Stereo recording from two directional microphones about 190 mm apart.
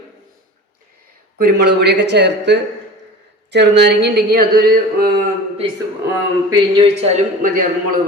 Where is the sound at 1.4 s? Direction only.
60° right (ahead or behind).